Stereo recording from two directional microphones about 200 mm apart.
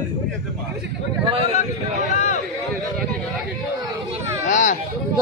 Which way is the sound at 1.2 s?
25° right (ahead or behind).